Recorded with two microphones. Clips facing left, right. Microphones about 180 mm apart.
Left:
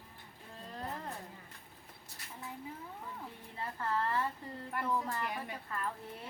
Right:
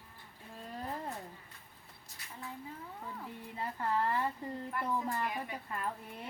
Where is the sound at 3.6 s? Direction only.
15° right (ahead or behind).